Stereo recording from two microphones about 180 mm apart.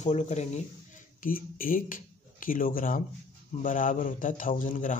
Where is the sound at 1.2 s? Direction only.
50° left (ahead or behind).